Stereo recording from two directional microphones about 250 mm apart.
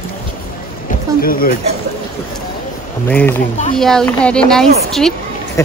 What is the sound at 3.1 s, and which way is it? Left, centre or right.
A woman's voice, centre.